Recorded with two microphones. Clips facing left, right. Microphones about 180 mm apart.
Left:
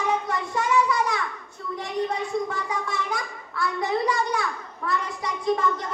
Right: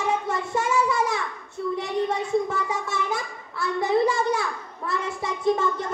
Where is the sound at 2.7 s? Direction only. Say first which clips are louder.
Right 1 dB; 25° right (ahead or behind).